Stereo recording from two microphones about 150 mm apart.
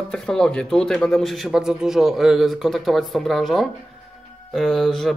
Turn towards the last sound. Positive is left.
turn(degrees=0)  # may be behind; listen again after turning